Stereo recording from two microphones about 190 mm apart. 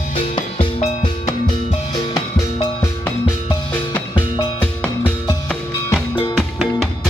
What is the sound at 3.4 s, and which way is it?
Music, 25° left (ahead or behind).